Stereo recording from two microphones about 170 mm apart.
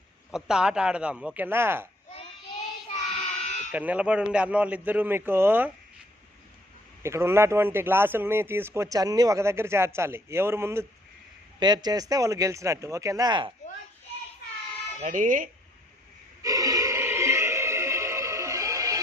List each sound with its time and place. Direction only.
0.3 s speech: 5° right (ahead or behind)
3.4 s sheep: 40° left (ahead or behind)
3.7 s speech: 10° right (ahead or behind)
7.0 s speech: 15° right (ahead or behind)
15.0 s speech: 50° right (ahead or behind)
16.4 s music: 20° right (ahead or behind)